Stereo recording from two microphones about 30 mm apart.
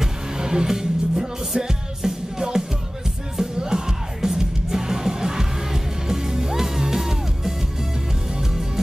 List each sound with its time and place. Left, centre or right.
0.0 s music: right